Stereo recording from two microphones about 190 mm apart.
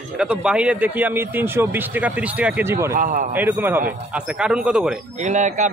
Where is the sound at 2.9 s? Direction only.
45° right (ahead or behind).